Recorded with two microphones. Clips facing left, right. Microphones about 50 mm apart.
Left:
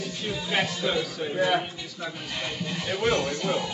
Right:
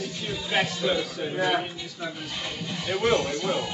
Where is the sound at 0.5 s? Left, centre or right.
Centre.